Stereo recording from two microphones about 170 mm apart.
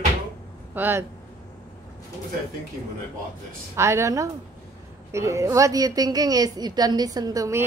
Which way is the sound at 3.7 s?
15° right (ahead or behind).